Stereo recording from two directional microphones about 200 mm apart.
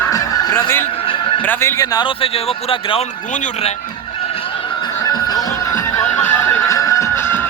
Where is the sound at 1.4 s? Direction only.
10° left (ahead or behind); by 3.0 s 30° left (ahead or behind).